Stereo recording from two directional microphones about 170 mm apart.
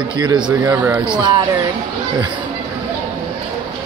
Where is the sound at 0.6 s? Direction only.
10° right (ahead or behind).